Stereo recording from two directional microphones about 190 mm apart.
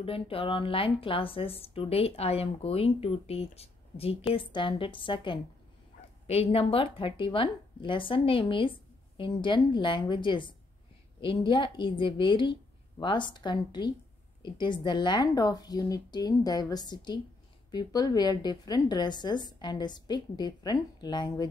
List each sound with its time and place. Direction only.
0.0 s a woman's voice: 30° left (ahead or behind)